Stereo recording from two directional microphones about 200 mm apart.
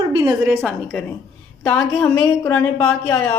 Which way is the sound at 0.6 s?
5° left (ahead or behind).